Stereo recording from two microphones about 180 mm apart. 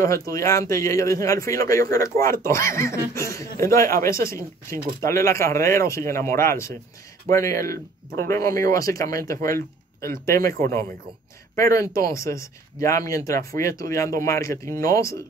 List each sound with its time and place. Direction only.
0.3 s speech: 15° left (ahead or behind)
11.5 s speech: 15° left (ahead or behind)